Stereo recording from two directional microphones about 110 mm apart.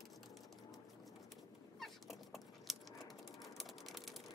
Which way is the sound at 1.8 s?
Centre (ahead or behind).